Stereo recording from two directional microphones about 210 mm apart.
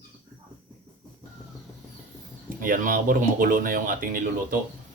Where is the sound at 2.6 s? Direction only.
40° right (ahead or behind).